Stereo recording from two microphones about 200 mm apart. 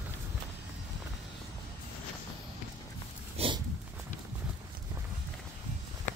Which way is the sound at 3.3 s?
25° right (ahead or behind).